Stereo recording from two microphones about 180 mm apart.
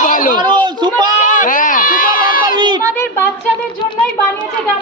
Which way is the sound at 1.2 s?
45° left (ahead or behind).